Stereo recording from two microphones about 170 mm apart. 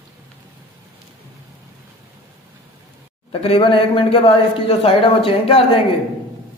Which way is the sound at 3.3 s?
35° left (ahead or behind).